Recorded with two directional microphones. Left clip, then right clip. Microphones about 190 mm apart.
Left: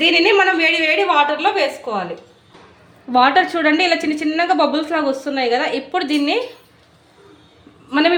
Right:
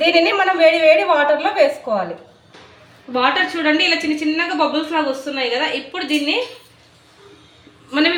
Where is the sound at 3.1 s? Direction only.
65° left (ahead or behind).